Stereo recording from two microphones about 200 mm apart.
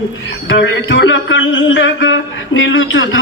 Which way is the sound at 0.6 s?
65° left (ahead or behind).